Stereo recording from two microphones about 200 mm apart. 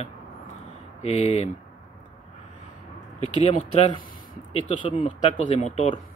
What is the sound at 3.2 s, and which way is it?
Speech, 30° left (ahead or behind).